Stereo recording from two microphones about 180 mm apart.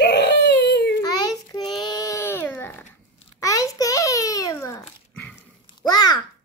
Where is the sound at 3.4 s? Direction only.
20° left (ahead or behind).